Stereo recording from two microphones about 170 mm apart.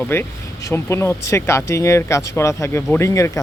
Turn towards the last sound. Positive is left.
turn(degrees=15)  # may be behind; listen again after turning